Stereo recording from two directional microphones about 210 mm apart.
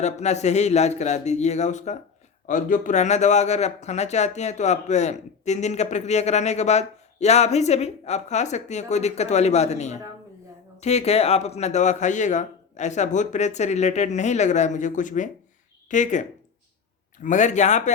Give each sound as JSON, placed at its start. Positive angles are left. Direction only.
{"t": 0.0, "sound": "speech", "side_deg": 30}
{"t": 17.2, "sound": "speech", "side_deg": 35}